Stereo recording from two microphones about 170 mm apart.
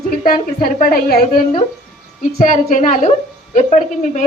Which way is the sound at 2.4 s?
50° left (ahead or behind).